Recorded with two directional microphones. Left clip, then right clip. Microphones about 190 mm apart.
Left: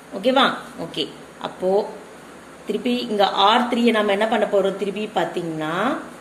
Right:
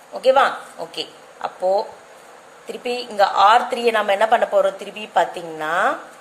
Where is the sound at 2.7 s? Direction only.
30° right (ahead or behind).